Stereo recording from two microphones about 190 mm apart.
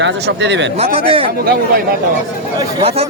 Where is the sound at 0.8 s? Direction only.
30° right (ahead or behind).